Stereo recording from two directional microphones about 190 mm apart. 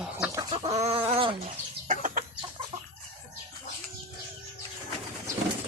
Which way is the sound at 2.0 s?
45° right (ahead or behind).